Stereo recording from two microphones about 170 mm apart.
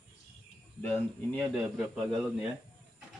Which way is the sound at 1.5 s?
Centre (ahead or behind).